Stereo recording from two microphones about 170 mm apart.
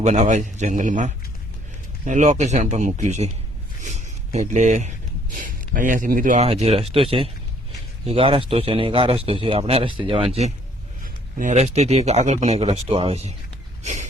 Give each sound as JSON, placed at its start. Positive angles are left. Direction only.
{"t": 0.0, "sound": "speech", "side_deg": -45}
{"t": 6.4, "sound": "speech", "side_deg": -40}
{"t": 13.8, "sound": "a sound", "side_deg": -45}